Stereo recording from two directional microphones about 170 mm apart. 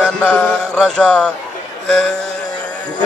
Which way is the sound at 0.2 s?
10° left (ahead or behind).